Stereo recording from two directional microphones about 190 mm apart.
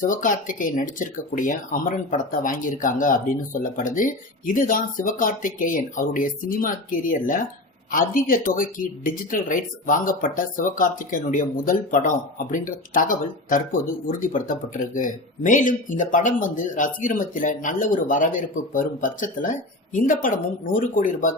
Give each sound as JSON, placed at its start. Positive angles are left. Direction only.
{"t": 0.0, "sound": "speech", "side_deg": 45}